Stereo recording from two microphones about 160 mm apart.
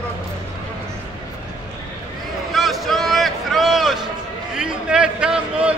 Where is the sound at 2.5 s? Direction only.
Centre (ahead or behind).